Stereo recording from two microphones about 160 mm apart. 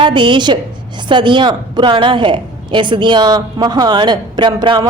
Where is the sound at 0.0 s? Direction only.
30° right (ahead or behind).